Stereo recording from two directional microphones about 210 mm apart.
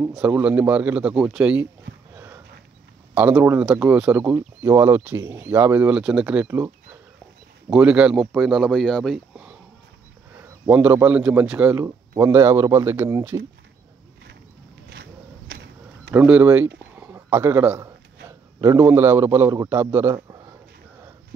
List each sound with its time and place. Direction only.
0.0 s a man's voice: 5° right (ahead or behind)
2.1 s a sound: 10° right (ahead or behind)
3.2 s a man's voice: 10° right (ahead or behind)
7.7 s speech: 5° right (ahead or behind)
10.7 s a man's voice: 10° right (ahead or behind)
14.9 s a sound: 55° right (ahead or behind)
16.1 s a man's voice: 10° right (ahead or behind)
16.9 s a sound: 10° right (ahead or behind)
18.6 s a man's voice: 10° right (ahead or behind)